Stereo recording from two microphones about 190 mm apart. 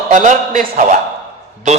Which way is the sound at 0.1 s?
40° right (ahead or behind).